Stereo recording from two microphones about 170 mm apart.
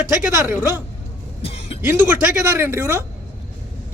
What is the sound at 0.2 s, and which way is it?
Speech, 10° right (ahead or behind).